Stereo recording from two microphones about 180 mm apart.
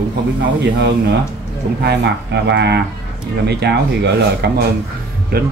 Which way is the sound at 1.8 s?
70° right (ahead or behind).